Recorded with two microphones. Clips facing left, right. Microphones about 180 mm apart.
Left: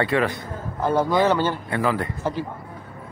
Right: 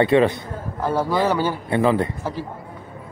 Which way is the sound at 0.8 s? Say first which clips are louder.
Left 1 dB; 5° right (ahead or behind).